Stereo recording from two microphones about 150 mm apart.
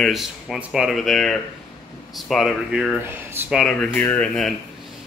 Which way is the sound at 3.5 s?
5° left (ahead or behind).